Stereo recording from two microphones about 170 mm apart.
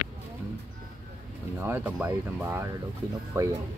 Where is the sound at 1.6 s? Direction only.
10° right (ahead or behind).